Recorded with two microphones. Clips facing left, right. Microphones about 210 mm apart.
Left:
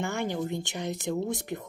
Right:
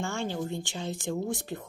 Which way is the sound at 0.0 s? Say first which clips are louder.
Left 2 dB; 15° left (ahead or behind).